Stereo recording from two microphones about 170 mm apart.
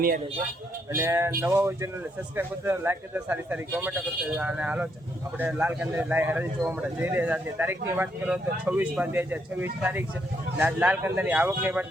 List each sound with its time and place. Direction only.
0.9 s speech: 15° right (ahead or behind)